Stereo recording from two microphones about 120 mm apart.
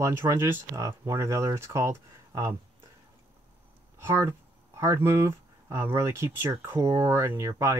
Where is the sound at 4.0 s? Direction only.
20° right (ahead or behind).